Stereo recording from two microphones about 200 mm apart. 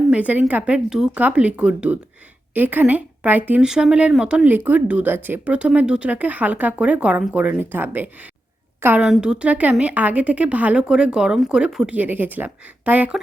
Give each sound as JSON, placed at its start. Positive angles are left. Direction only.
{"t": 0.1, "sound": "a woman's voice", "side_deg": -5}